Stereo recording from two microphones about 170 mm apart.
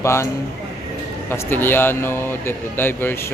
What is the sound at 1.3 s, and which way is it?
Speech, 10° left (ahead or behind).